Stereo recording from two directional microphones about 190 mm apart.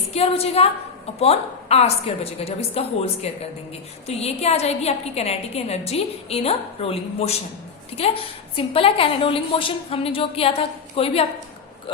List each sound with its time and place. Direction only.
0.1 s a woman's voice: 30° left (ahead or behind)